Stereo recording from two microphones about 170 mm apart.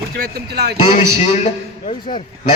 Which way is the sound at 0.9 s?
40° left (ahead or behind).